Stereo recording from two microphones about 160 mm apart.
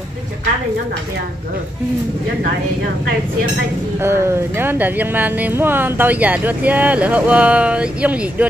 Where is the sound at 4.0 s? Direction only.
15° right (ahead or behind).